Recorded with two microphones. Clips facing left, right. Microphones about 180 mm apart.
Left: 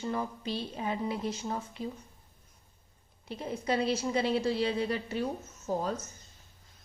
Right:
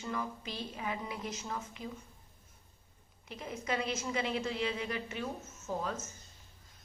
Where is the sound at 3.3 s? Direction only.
30° left (ahead or behind).